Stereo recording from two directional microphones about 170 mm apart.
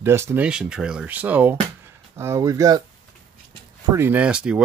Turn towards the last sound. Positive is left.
turn(degrees=-5)  # may be behind; listen again after turning